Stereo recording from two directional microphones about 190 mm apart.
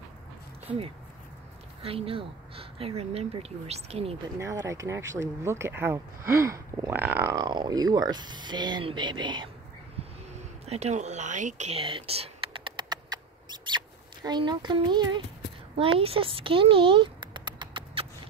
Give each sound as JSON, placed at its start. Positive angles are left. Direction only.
{"t": 1.8, "sound": "speech", "side_deg": -30}
{"t": 4.4, "sound": "speech", "side_deg": -15}
{"t": 9.9, "sound": "a sound", "side_deg": -35}
{"t": 15.8, "sound": "speech", "side_deg": -30}